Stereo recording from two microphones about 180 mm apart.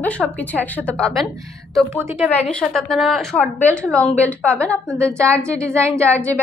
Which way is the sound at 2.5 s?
5° left (ahead or behind).